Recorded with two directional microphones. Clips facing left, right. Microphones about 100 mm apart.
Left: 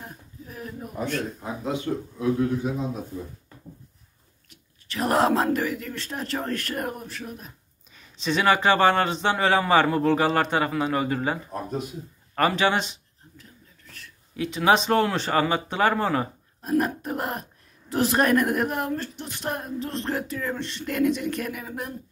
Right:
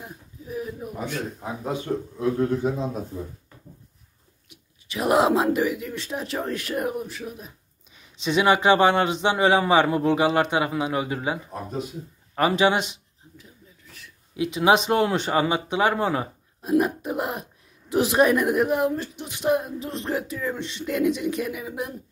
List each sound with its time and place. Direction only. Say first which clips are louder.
0.0 s a sound: right 1 dB; 5° right (ahead or behind)
2.1 s a man's voice: right 1 dB; 40° right (ahead or behind)
4.9 s speech: right 2 dB; 10° right (ahead or behind)
7.9 s a sound: even; 5° right (ahead or behind)
8.8 s speech: right 1 dB; 5° right (ahead or behind)
9.3 s speech: right 1 dB; 15° right (ahead or behind)
12.7 s speech: right 1 dB; 30° left (ahead or behind)
13.4 s a sound: right 1 dB; 5° right (ahead or behind)
14.3 s speech: right 1 dB; 15° right (ahead or behind)